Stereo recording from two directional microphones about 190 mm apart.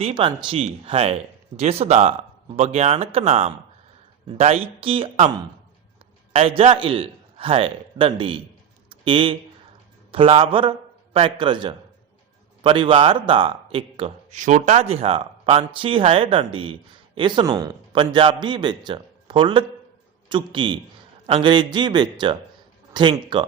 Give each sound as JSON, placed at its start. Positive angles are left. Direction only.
{"t": 0.0, "sound": "speech", "side_deg": -30}
{"t": 6.3, "sound": "a man's voice", "side_deg": -30}